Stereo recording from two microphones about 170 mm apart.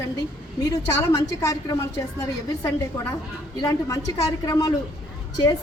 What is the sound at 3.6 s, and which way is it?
A woman's voice, 20° left (ahead or behind).